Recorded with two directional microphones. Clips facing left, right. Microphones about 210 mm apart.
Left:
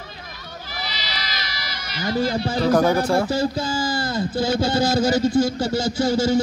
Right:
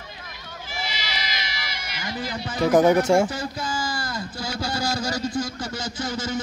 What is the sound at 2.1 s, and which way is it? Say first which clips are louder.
Speech: left 6 dB; 30° left (ahead or behind).